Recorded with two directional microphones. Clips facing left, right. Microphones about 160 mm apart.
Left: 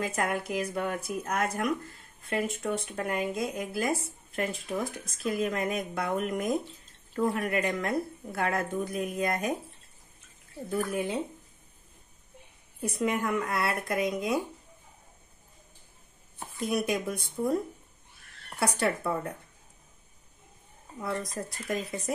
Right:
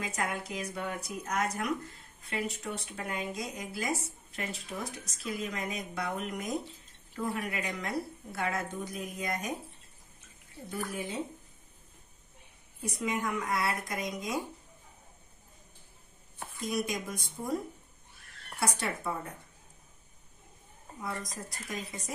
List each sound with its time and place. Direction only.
0.0 s speech: 55° left (ahead or behind)
10.9 s speech: 60° left (ahead or behind)
12.8 s speech: 60° left (ahead or behind)
16.6 s speech: 65° left (ahead or behind)
18.6 s speech: 60° left (ahead or behind)
21.3 s speech: 60° left (ahead or behind)